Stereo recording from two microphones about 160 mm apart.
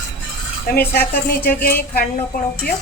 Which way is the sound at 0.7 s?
70° left (ahead or behind).